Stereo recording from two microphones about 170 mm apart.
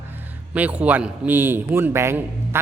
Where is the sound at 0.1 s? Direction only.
10° right (ahead or behind).